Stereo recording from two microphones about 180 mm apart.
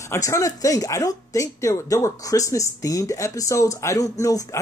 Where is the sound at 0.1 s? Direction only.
15° left (ahead or behind).